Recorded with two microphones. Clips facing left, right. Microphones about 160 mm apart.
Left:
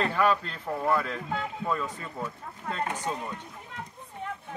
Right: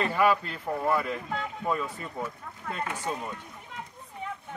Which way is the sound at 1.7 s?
10° right (ahead or behind).